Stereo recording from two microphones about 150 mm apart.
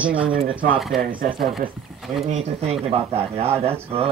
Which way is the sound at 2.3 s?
45° right (ahead or behind).